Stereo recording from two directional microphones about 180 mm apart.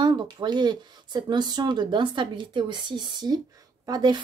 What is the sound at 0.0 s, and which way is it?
Speech, 25° right (ahead or behind).